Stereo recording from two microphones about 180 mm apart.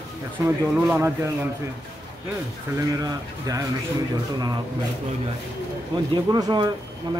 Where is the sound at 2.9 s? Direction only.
20° right (ahead or behind).